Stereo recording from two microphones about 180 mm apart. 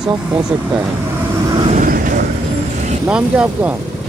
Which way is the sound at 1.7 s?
45° right (ahead or behind).